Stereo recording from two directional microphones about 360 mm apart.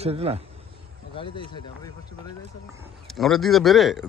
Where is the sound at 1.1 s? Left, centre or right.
Centre.